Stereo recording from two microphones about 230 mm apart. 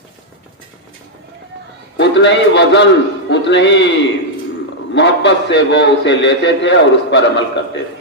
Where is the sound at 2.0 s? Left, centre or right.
Left.